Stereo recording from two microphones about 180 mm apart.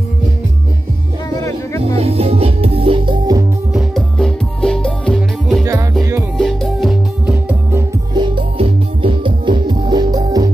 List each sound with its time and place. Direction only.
1.3 s music: 20° left (ahead or behind)
2.0 s music: 35° right (ahead or behind)
3.7 s music: centre (ahead or behind)
8.1 s music: 25° right (ahead or behind)